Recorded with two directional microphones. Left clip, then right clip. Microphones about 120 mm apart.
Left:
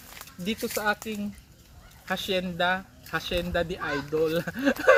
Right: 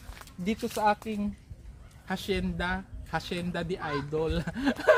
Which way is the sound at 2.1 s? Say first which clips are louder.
Left 4 dB; 35° right (ahead or behind).